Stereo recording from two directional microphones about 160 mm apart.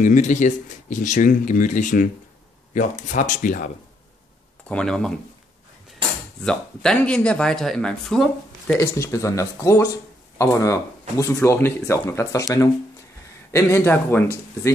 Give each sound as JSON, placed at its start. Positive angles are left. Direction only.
{"t": 0.0, "sound": "speech", "side_deg": 50}
{"t": 4.6, "sound": "speech", "side_deg": 5}
{"t": 6.4, "sound": "speech", "side_deg": 5}
{"t": 8.7, "sound": "speech", "side_deg": 20}